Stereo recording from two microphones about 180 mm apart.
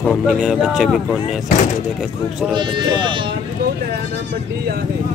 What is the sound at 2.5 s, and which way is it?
Speech, 25° right (ahead or behind).